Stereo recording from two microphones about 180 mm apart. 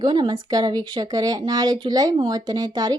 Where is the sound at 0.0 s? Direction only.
25° right (ahead or behind).